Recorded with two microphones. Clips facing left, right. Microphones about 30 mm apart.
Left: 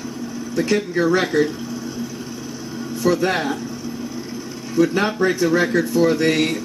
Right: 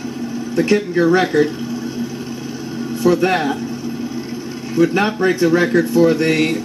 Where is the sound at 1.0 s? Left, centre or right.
Centre.